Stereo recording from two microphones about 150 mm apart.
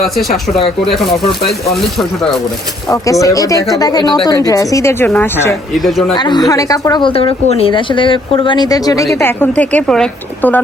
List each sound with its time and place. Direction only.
0.0 s speech: centre (ahead or behind)
2.9 s speech: 20° left (ahead or behind)
5.7 s speech: centre (ahead or behind)
6.1 s a woman's voice: 30° left (ahead or behind)
9.1 s speech: 15° left (ahead or behind)